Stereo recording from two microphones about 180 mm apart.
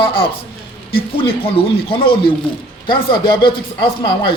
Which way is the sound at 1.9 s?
30° left (ahead or behind).